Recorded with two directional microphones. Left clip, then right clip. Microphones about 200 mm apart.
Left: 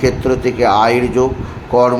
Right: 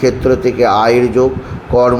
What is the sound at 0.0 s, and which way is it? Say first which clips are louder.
A man's voice: right 3 dB; 5° right (ahead or behind).